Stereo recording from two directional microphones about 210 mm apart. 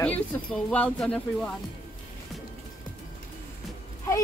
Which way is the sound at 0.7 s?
5° left (ahead or behind).